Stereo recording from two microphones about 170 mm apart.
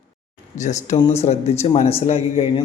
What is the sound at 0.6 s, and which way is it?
A man's voice, 45° left (ahead or behind).